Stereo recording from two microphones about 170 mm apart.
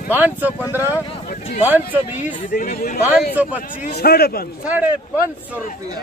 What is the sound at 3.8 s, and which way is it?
Speech, 65° left (ahead or behind).